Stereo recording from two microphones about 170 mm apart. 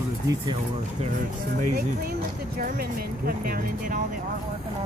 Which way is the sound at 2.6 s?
60° right (ahead or behind).